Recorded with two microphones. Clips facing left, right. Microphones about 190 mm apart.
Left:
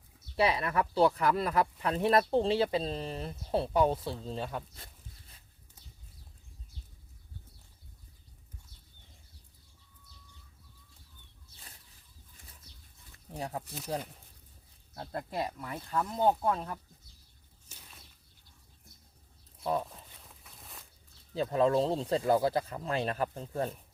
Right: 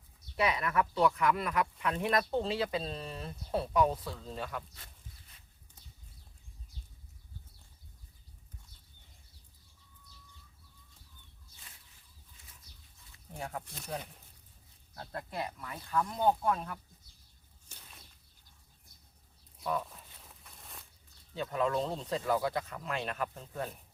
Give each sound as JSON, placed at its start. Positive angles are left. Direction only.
{"t": 0.3, "sound": "speech", "side_deg": 30}
{"t": 13.7, "sound": "speech", "side_deg": 5}
{"t": 14.9, "sound": "speech", "side_deg": 25}
{"t": 19.6, "sound": "speech", "side_deg": 30}
{"t": 20.2, "sound": "a sound", "side_deg": 0}
{"t": 21.3, "sound": "speech", "side_deg": 35}